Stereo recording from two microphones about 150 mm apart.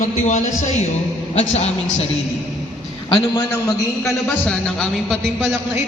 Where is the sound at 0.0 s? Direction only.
55° left (ahead or behind).